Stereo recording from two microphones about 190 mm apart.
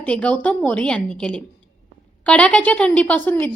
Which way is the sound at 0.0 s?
5° left (ahead or behind).